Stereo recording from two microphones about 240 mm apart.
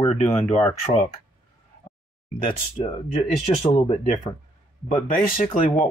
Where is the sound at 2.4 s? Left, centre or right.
Left.